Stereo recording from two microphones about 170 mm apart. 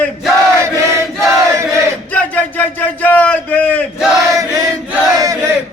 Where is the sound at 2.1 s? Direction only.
10° left (ahead or behind).